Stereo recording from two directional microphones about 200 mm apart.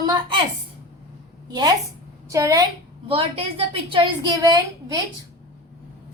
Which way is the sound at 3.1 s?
25° right (ahead or behind).